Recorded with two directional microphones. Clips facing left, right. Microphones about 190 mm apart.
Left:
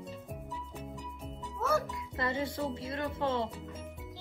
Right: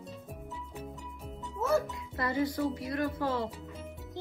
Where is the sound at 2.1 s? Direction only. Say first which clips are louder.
Right 3 dB; 25° left (ahead or behind).